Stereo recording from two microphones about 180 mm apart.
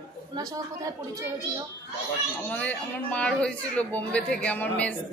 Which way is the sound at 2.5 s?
10° left (ahead or behind).